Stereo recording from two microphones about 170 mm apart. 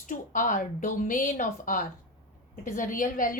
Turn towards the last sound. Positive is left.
turn(degrees=50)  # may be behind; listen again after turning